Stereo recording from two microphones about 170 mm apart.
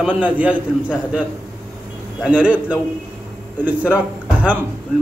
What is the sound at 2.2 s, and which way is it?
A man's voice, 5° right (ahead or behind).